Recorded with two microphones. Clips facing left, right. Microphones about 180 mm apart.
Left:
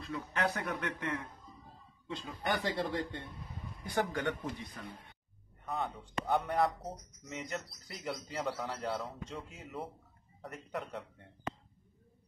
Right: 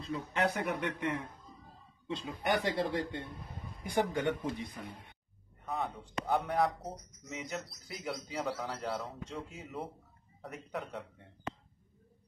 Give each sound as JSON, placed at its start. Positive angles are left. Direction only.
{"t": 0.0, "sound": "speech", "side_deg": -20}
{"t": 5.7, "sound": "speech", "side_deg": 0}